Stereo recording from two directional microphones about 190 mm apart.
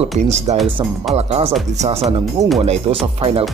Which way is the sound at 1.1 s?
30° right (ahead or behind).